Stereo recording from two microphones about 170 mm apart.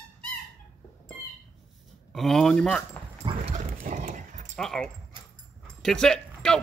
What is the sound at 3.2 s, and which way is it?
Dog, 30° right (ahead or behind).